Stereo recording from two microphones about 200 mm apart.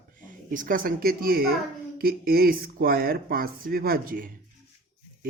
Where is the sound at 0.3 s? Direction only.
40° right (ahead or behind).